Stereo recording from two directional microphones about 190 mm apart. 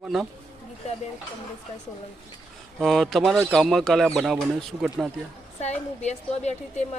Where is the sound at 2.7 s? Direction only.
Centre (ahead or behind).